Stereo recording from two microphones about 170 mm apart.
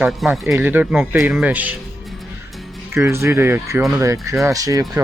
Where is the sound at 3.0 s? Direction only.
15° right (ahead or behind).